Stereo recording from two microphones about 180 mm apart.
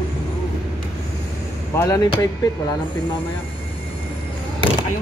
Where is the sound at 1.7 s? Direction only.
15° left (ahead or behind).